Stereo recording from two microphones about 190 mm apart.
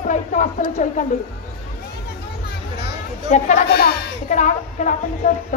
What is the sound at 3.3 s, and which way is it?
A woman's voice, 40° left (ahead or behind).